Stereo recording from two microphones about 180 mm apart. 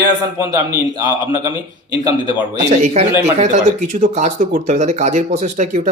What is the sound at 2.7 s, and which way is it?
Speech, 40° right (ahead or behind).